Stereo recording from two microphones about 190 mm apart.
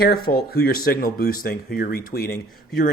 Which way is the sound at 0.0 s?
50° left (ahead or behind).